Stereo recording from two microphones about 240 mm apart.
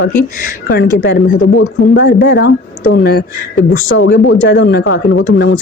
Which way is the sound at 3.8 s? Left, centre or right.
Left.